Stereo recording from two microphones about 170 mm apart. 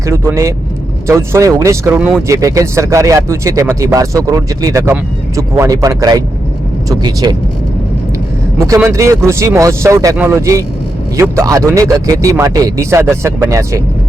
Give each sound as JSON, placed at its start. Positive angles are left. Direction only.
{"t": 0.1, "sound": "speech", "side_deg": -15}
{"t": 8.5, "sound": "speech", "side_deg": -20}